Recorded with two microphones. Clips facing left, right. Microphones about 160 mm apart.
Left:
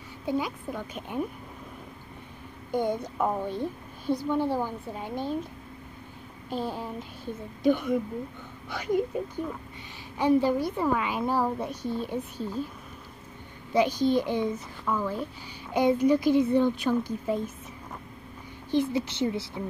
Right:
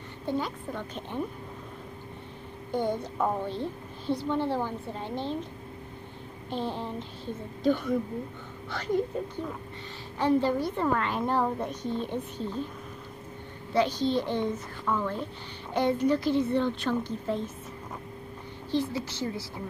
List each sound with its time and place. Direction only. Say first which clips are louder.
0.3 s a woman's voice: left 2 dB; 10° left (ahead or behind)
2.7 s a woman's voice: left 1 dB; 15° left (ahead or behind)
6.5 s a woman's voice: even; 10° left (ahead or behind)
10.1 s a woman's voice: left 2 dB; 10° left (ahead or behind)
13.7 s a woman's voice: left 2 dB; 10° left (ahead or behind)
18.7 s a woman's voice: left 3 dB; 20° left (ahead or behind)